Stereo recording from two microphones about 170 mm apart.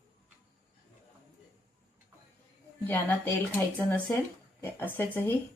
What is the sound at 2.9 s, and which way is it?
Speech, 10° left (ahead or behind).